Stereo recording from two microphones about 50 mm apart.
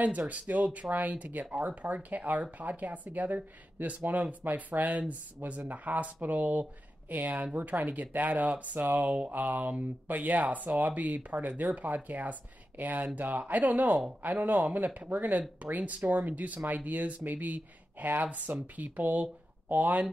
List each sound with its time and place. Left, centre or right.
0.3 s speech: right